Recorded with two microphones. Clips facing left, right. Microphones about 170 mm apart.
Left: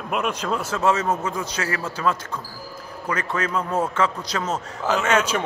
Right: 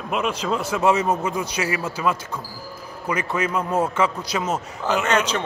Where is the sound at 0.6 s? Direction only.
15° right (ahead or behind).